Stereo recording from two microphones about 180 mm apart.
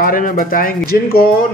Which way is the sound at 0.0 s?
50° left (ahead or behind).